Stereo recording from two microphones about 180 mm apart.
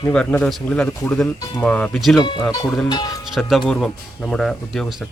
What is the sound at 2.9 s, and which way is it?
Speech, 25° left (ahead or behind).